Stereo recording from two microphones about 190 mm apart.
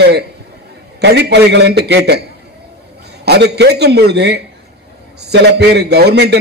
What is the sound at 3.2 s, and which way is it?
A man's voice, 60° right (ahead or behind).